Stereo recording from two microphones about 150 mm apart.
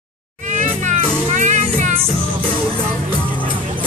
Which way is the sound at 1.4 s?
55° right (ahead or behind).